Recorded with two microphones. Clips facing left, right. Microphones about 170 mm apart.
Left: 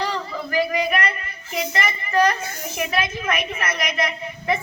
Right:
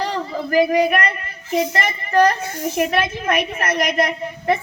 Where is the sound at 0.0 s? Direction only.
40° right (ahead or behind).